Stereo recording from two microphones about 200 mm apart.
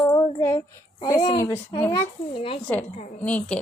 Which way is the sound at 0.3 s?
15° left (ahead or behind).